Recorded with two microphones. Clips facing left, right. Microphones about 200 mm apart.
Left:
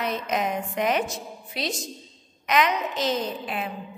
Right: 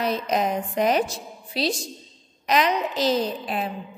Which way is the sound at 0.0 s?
35° right (ahead or behind).